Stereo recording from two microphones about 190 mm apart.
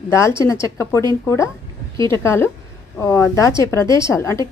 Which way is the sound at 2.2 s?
15° left (ahead or behind).